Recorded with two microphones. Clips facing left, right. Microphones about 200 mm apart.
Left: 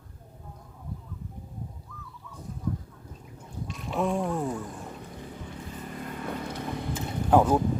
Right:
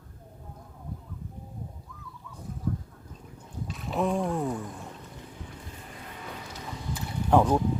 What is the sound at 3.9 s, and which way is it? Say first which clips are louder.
Speech: even; centre (ahead or behind).